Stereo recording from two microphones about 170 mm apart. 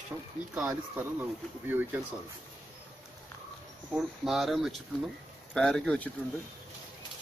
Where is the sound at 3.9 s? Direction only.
Centre (ahead or behind).